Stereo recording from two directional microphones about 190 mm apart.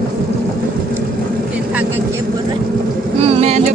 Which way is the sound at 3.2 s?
35° right (ahead or behind).